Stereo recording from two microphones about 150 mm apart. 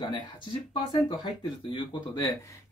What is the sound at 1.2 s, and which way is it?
Speech, 35° left (ahead or behind).